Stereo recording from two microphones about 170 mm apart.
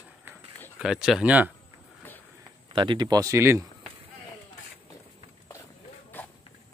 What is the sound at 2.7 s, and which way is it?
Speech, 30° right (ahead or behind).